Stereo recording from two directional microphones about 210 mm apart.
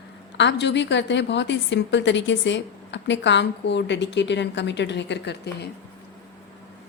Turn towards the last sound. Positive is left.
turn(degrees=55)  # may be behind; listen again after turning